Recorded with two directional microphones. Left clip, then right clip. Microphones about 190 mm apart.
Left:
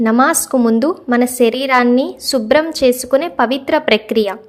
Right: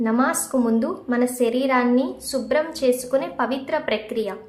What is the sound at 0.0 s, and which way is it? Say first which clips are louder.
A woman's voice: left 9 dB; 45° left (ahead or behind).